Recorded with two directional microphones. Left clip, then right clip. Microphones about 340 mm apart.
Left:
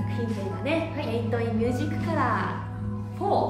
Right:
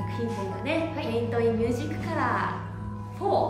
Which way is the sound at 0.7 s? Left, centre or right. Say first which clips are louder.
Left 1 dB; centre.